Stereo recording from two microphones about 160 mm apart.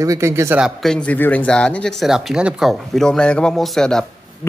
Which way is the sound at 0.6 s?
Centre (ahead or behind).